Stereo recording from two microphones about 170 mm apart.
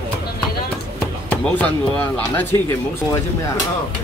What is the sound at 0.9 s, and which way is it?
Speech, 10° left (ahead or behind).